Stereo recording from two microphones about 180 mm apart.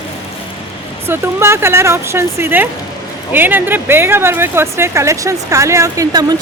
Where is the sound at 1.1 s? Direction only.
15° right (ahead or behind).